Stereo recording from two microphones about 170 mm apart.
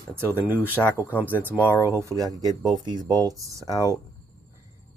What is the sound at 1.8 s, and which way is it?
Speech, 15° right (ahead or behind).